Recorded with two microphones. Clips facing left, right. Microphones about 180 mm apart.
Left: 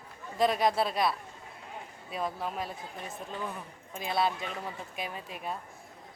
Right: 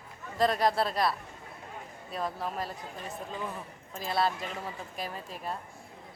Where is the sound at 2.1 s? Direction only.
Centre (ahead or behind).